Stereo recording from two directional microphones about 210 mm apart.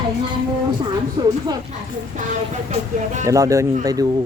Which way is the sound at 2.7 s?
35° right (ahead or behind).